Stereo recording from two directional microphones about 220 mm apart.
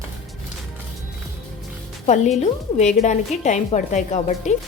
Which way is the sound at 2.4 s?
30° left (ahead or behind).